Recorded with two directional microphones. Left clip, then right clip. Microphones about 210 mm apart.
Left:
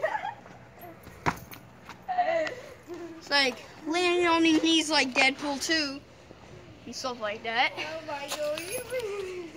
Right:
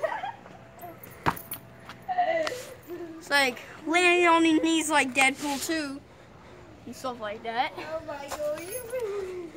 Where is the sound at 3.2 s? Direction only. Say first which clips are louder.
Right 1 dB; 5° right (ahead or behind).